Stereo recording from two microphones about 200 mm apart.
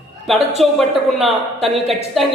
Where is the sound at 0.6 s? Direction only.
Centre (ahead or behind).